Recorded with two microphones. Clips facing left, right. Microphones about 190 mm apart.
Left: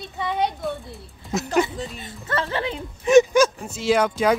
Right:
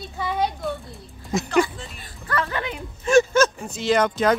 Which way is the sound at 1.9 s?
25° left (ahead or behind).